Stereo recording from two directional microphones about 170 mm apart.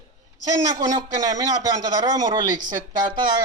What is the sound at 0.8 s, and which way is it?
Speech, 20° right (ahead or behind).